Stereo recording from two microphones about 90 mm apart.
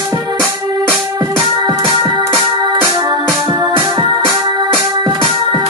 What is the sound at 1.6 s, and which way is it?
Music, 50° right (ahead or behind).